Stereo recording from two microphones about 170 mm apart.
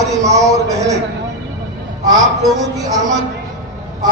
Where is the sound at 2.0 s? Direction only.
20° right (ahead or behind).